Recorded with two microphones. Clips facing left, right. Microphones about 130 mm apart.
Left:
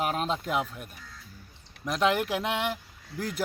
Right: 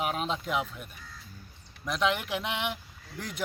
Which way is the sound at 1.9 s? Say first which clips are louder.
Left 3 dB; 45° left (ahead or behind).